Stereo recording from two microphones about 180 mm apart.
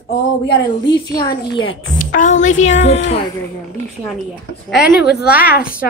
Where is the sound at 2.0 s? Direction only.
50° left (ahead or behind).